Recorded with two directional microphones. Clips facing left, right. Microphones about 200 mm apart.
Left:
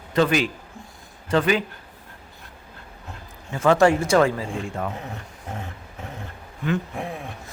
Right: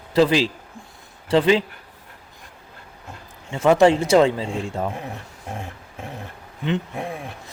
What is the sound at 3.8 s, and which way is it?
Speech, 20° right (ahead or behind).